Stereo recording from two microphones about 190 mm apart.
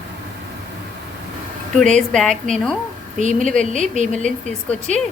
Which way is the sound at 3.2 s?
40° right (ahead or behind).